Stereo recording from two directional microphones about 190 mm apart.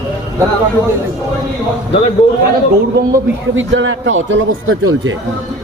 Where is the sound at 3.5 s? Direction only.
85° right.